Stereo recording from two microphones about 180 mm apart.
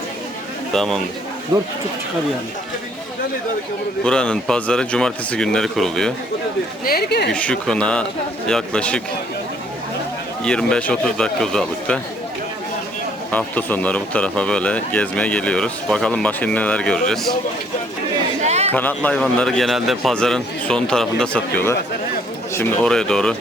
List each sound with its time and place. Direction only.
0.7 s a man's voice: centre (ahead or behind)
1.5 s speech: 20° right (ahead or behind)
4.0 s a man's voice: 5° left (ahead or behind)
6.8 s speech: 60° left (ahead or behind)
7.3 s a man's voice: 5° left (ahead or behind)
10.4 s a man's voice: 5° left (ahead or behind)
13.3 s speech: 10° left (ahead or behind)
18.4 s chatter: 40° right (ahead or behind)
18.7 s a man's voice: 10° left (ahead or behind)